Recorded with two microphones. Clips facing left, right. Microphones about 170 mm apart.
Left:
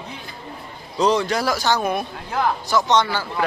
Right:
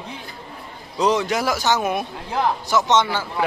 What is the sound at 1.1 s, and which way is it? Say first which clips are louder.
Speech: even; 20° right (ahead or behind).